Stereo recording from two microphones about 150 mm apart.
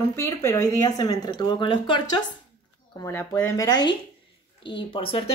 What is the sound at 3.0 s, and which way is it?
A woman's voice, 15° left (ahead or behind).